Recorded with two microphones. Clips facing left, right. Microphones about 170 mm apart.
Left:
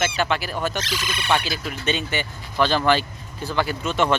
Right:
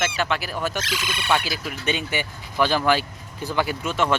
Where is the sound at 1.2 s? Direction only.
Centre (ahead or behind).